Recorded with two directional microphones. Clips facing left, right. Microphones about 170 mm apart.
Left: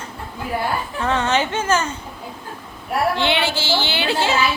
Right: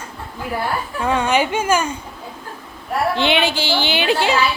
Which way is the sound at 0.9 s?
10° right (ahead or behind).